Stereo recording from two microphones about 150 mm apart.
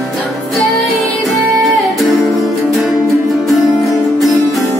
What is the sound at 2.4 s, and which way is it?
Music, centre (ahead or behind).